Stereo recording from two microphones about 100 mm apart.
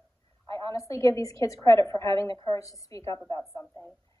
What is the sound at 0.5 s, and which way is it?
A woman's voice, 30° left (ahead or behind).